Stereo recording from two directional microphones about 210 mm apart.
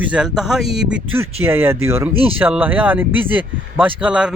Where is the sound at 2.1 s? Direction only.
25° right (ahead or behind).